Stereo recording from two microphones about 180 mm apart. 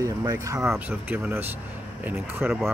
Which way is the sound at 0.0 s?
15° right (ahead or behind).